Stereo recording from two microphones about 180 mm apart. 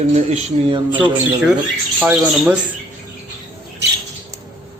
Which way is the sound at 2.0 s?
5° right (ahead or behind).